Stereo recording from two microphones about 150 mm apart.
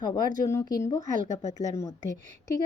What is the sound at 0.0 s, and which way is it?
Speech, 25° left (ahead or behind).